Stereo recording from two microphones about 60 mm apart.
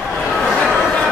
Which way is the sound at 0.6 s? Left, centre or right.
Centre.